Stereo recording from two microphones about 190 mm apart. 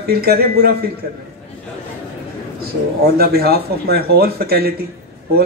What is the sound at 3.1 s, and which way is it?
A man's voice, 55° right (ahead or behind).